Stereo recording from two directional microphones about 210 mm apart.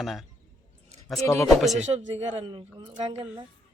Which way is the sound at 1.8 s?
30° right (ahead or behind).